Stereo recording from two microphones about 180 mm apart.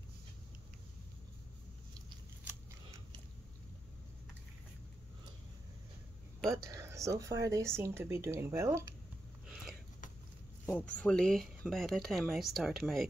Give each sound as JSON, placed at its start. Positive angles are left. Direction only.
{"t": 6.4, "sound": "speech", "side_deg": -15}
{"t": 9.5, "sound": "a sound", "side_deg": -5}
{"t": 10.6, "sound": "speech", "side_deg": 10}